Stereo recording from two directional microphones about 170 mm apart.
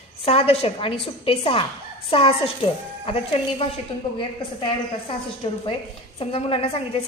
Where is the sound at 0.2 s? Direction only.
35° left (ahead or behind).